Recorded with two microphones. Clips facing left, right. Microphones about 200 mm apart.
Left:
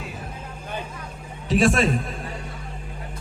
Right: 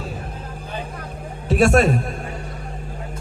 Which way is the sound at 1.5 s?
60° right (ahead or behind).